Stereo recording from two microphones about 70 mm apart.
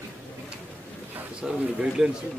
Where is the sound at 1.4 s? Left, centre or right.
Centre.